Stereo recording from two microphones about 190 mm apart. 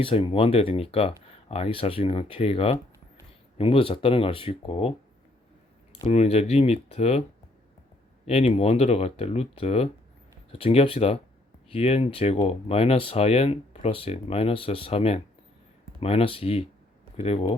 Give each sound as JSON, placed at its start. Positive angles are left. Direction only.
{"t": 0.0, "sound": "speech", "side_deg": 30}
{"t": 6.1, "sound": "speech", "side_deg": 35}